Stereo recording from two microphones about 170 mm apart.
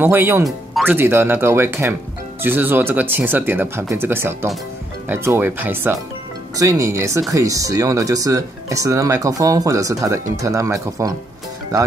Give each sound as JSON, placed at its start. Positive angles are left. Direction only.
{"t": 0.0, "sound": "speech", "side_deg": -15}